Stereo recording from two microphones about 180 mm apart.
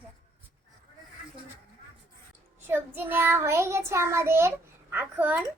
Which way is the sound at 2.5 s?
10° right (ahead or behind).